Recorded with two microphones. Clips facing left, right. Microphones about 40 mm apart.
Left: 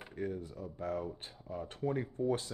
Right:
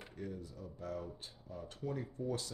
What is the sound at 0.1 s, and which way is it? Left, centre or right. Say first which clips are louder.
Speech: left 8 dB; left.